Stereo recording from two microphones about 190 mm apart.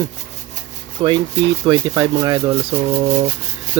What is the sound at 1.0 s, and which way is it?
Speech, 25° right (ahead or behind).